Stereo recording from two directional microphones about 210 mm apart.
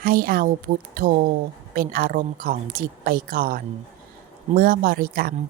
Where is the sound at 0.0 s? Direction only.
45° right (ahead or behind).